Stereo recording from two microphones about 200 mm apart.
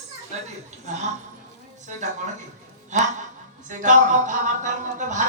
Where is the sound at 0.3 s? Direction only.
35° right (ahead or behind).